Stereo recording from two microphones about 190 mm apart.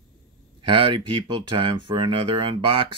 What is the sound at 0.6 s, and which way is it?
Speech, 25° right (ahead or behind).